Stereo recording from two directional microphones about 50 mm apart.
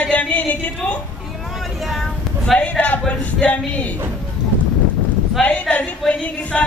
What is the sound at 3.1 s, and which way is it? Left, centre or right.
Speech, left.